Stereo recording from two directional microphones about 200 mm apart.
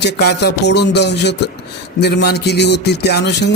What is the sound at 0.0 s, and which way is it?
A man's voice, 55° left (ahead or behind).